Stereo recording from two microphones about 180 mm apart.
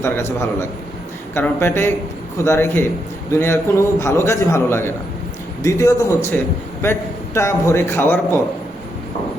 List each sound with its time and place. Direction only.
0.0 s a man's voice: 15° left (ahead or behind)